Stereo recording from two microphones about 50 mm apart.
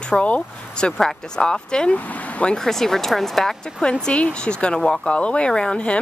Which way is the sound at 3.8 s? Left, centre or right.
Centre.